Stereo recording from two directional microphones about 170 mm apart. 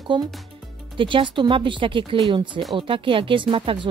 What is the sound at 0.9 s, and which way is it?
Speech, 30° right (ahead or behind).